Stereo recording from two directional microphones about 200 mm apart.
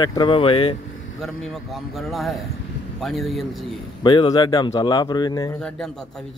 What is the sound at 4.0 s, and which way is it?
Speech, 25° left (ahead or behind).